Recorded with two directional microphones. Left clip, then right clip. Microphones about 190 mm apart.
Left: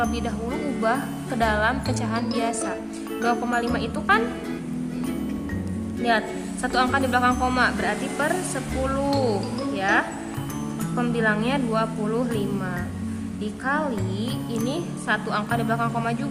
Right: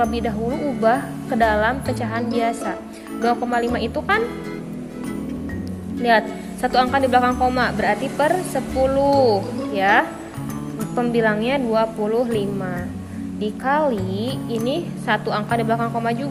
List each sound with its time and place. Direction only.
0.0 s speech: 15° right (ahead or behind)
6.1 s speech: 20° right (ahead or behind)